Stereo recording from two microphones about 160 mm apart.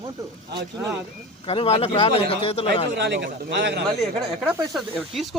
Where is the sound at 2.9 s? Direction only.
90° right.